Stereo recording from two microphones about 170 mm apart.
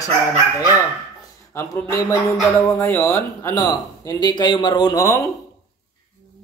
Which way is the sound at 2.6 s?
15° left (ahead or behind).